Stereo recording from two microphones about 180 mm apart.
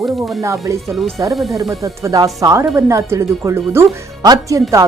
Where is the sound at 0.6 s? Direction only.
15° right (ahead or behind).